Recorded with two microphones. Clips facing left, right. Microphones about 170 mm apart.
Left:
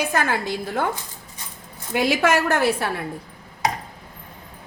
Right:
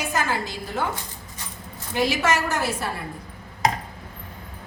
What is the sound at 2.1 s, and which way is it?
Speech, 60° left (ahead or behind).